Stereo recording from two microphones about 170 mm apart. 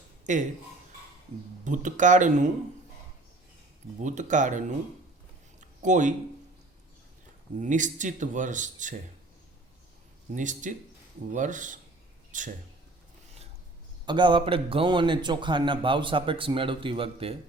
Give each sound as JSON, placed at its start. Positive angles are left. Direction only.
{"t": 0.3, "sound": "speech", "side_deg": -45}
{"t": 1.6, "sound": "speech", "side_deg": -45}
{"t": 4.0, "sound": "speech", "side_deg": -45}
{"t": 5.5, "sound": "a sound", "side_deg": -45}
{"t": 7.6, "sound": "speech", "side_deg": -45}
{"t": 10.3, "sound": "speech", "side_deg": -50}
{"t": 14.0, "sound": "a man's voice", "side_deg": -25}